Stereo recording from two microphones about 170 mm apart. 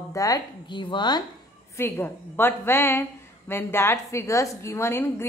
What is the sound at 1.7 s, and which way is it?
A woman's voice, 10° left (ahead or behind).